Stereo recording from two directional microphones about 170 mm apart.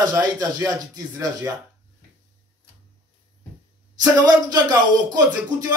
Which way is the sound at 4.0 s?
25° right (ahead or behind).